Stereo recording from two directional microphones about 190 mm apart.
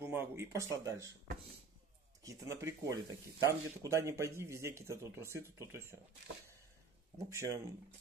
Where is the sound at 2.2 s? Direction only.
15° right (ahead or behind).